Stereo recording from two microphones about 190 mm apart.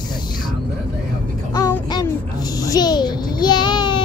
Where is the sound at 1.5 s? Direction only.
20° left (ahead or behind).